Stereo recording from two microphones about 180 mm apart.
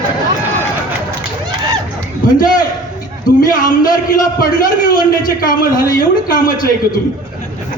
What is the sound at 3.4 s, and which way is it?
A man's voice, 50° left (ahead or behind).